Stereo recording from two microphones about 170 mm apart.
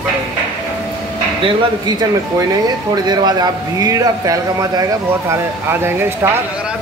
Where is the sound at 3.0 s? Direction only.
25° right (ahead or behind).